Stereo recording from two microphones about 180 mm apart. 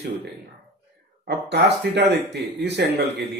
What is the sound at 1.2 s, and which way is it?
Speech, 70° right (ahead or behind).